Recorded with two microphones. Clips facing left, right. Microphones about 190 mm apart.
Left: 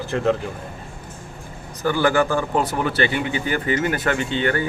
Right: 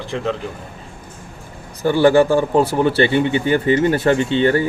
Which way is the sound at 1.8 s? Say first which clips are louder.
Right 6 dB; 30° right (ahead or behind).